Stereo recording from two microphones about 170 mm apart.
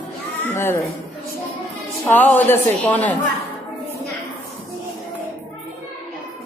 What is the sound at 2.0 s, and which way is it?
A man's voice, 10° left (ahead or behind).